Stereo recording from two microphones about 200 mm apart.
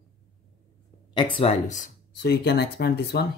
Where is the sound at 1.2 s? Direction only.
25° left (ahead or behind).